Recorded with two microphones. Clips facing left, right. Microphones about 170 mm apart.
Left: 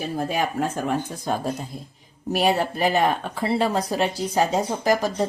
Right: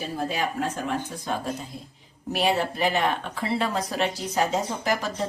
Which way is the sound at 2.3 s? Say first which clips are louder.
Left 3 dB; 40° left (ahead or behind).